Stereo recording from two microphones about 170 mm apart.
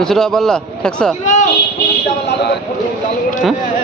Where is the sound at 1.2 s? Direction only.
45° left (ahead or behind).